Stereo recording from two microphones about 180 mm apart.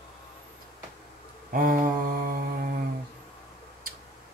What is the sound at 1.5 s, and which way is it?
Mantra, 50° right (ahead or behind).